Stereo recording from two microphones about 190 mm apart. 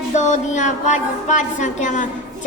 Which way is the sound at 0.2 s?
40° left (ahead or behind).